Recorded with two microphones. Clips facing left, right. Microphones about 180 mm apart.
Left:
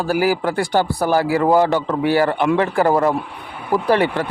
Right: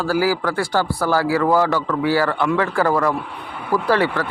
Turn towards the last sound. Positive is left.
turn(degrees=20)  # may be behind; listen again after turning